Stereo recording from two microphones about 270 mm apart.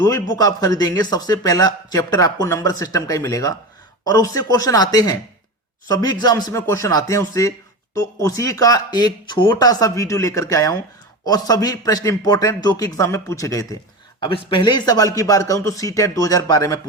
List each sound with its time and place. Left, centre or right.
0.0 s a man's voice: centre